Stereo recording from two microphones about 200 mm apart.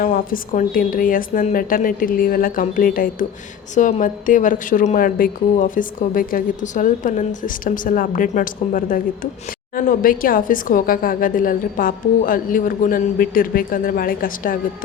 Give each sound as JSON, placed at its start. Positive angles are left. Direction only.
{"t": 0.0, "sound": "a woman's voice", "side_deg": 45}